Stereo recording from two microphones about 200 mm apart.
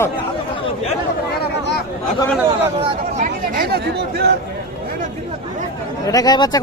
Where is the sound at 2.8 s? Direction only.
35° right (ahead or behind).